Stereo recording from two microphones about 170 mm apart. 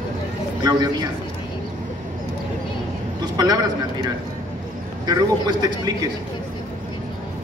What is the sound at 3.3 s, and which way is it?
Speech, 25° right (ahead or behind).